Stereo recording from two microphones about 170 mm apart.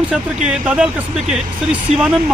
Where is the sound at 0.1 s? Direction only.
5° right (ahead or behind).